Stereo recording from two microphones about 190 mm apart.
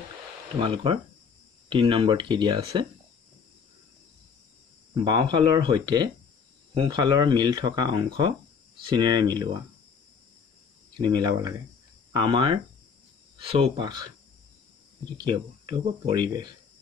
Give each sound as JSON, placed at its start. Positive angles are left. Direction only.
{"t": 0.6, "sound": "speech", "side_deg": -25}
{"t": 5.0, "sound": "speech", "side_deg": -25}
{"t": 11.0, "sound": "speech", "side_deg": -20}
{"t": 15.1, "sound": "speech", "side_deg": -20}